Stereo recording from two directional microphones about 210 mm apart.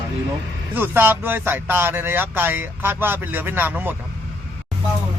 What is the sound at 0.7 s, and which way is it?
Speech, 10° right (ahead or behind).